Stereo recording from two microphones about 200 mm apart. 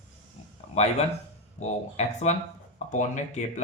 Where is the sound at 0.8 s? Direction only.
35° left (ahead or behind).